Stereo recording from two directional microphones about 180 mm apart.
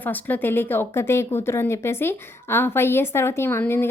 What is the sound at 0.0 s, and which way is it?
A woman's voice, 10° left (ahead or behind).